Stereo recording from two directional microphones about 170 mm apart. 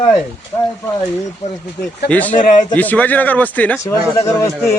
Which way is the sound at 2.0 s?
10° left (ahead or behind).